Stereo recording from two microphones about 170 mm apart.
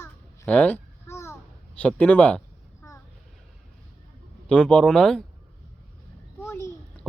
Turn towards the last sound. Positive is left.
turn(degrees=15)  # may be behind; listen again after turning